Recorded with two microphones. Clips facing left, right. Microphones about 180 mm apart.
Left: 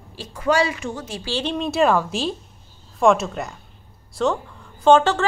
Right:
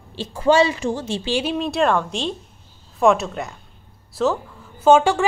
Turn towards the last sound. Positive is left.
turn(degrees=-10)  # may be behind; listen again after turning